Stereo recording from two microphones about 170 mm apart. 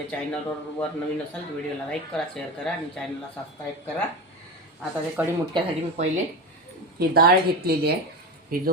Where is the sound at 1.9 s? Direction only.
5° left (ahead or behind).